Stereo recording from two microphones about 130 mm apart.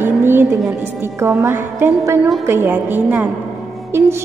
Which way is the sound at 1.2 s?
20° right (ahead or behind).